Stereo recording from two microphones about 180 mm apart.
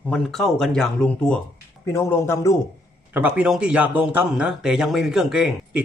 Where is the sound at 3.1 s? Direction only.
10° right (ahead or behind).